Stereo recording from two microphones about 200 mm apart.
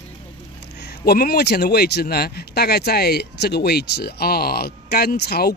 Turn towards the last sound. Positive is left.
turn(degrees=55)  # may be behind; listen again after turning